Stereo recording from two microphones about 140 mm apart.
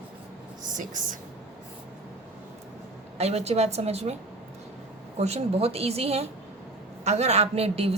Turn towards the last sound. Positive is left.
turn(degrees=-45)  # may be behind; listen again after turning